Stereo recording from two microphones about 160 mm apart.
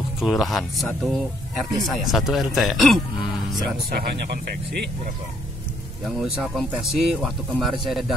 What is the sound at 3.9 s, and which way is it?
Speech, 85° right.